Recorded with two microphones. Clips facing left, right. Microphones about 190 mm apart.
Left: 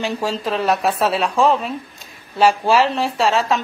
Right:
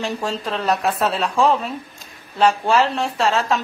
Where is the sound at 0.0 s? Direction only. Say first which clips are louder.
Left 2 dB; 5° left (ahead or behind).